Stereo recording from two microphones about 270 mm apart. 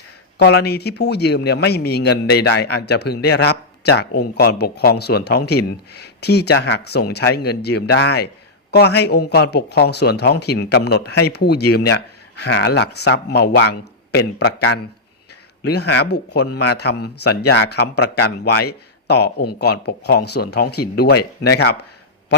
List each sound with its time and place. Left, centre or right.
0.3 s a man's voice: left